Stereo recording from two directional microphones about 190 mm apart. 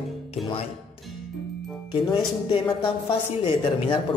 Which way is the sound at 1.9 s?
25° left (ahead or behind).